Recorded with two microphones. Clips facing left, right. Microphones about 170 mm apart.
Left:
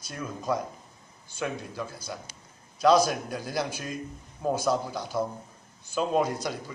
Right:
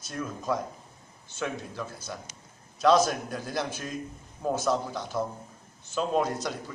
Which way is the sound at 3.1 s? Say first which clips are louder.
Left 1 dB; 5° left (ahead or behind).